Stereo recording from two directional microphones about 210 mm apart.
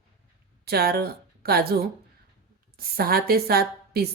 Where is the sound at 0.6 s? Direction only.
50° right (ahead or behind).